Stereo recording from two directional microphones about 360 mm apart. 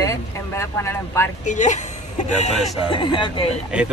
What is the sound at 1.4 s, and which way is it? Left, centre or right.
Speech, centre.